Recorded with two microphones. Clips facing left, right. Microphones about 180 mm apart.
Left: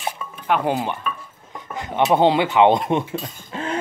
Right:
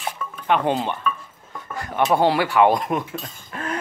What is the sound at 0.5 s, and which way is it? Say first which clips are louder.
Speech: even; 10° left (ahead or behind).